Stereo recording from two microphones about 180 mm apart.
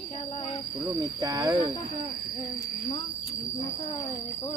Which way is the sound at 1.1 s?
20° right (ahead or behind).